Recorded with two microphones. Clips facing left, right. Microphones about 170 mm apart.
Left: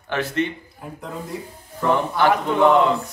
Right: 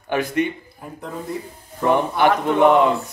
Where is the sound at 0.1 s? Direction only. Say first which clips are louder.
Right 2 dB; 15° right (ahead or behind).